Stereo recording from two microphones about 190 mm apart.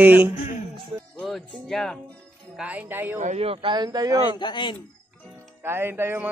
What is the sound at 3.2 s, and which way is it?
Speech, 35° right (ahead or behind).